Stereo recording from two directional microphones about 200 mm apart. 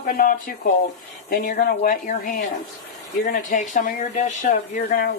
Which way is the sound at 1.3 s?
45° left (ahead or behind).